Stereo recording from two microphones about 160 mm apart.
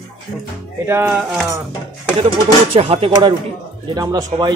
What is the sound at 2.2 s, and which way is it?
Speech, 35° right (ahead or behind).